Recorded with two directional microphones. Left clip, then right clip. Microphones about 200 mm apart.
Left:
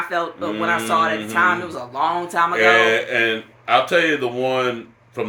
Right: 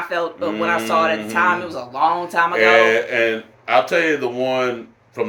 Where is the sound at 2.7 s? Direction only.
25° left (ahead or behind).